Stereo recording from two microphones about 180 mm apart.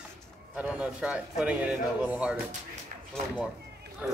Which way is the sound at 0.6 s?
5° right (ahead or behind).